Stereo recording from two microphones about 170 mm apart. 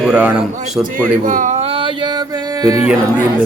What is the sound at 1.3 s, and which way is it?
Speech, 50° right (ahead or behind).